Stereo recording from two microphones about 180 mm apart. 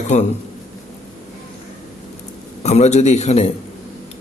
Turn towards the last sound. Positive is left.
turn(degrees=40)  # may be behind; listen again after turning